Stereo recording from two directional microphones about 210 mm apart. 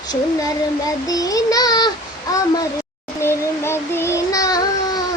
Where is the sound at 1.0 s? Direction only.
15° left (ahead or behind).